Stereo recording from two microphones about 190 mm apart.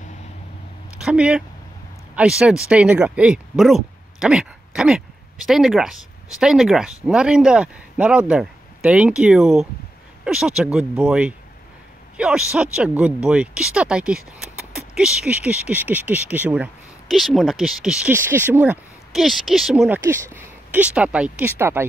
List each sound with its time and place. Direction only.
1.0 s speech: 5° right (ahead or behind)